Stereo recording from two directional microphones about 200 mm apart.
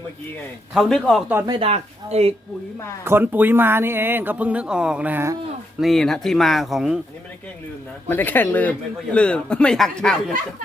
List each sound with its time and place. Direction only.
0.7 s speech: centre (ahead or behind)
1.3 s speech: 10° right (ahead or behind)
1.5 s speech: 30° right (ahead or behind)
3.0 s speech: 10° right (ahead or behind)
5.8 s speech: centre (ahead or behind)
8.0 s speech: 10° left (ahead or behind)